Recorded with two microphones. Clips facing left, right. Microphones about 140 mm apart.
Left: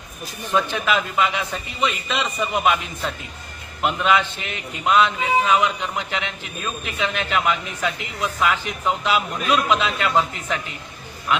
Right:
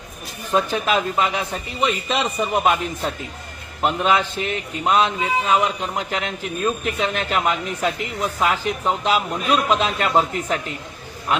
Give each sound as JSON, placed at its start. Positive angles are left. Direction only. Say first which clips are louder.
{"t": 0.5, "sound": "a man's voice", "louder": "right 2 dB", "side_deg": -35}